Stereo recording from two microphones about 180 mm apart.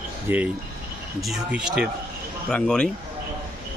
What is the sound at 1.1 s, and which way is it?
A man's voice, centre (ahead or behind).